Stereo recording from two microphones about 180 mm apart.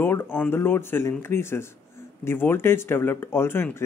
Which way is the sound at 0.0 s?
10° left (ahead or behind).